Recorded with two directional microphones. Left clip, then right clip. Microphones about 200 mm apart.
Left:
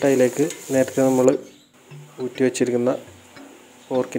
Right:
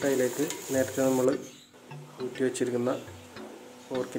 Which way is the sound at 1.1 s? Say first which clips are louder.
Left 9 dB; 25° left (ahead or behind).